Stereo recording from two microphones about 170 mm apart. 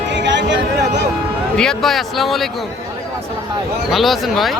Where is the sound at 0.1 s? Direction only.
90° right.